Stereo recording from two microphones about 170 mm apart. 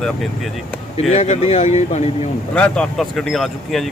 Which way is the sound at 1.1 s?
40° left (ahead or behind).